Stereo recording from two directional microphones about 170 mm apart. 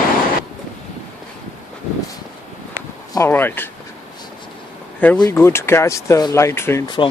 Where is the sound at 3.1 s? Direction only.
15° left (ahead or behind).